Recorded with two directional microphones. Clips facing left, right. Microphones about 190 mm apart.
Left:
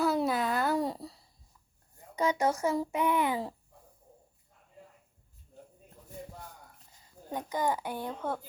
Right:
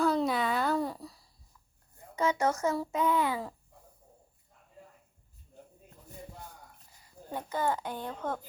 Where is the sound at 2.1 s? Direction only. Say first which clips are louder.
Even; 15° left (ahead or behind).